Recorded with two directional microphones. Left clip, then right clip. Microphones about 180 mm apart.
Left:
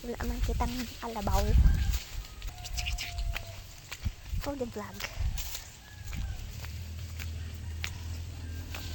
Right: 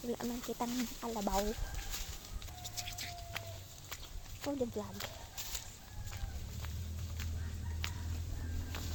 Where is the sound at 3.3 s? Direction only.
55° left (ahead or behind).